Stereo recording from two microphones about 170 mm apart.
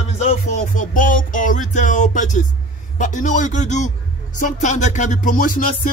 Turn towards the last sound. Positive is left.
turn(degrees=55)  # may be behind; listen again after turning